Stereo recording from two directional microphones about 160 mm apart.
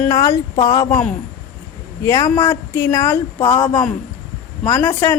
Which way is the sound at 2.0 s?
20° left (ahead or behind).